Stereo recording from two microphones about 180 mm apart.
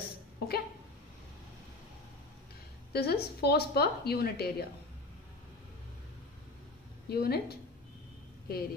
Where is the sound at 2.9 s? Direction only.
60° left (ahead or behind).